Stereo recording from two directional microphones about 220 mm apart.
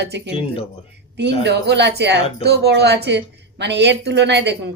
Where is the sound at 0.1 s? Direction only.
50° right (ahead or behind).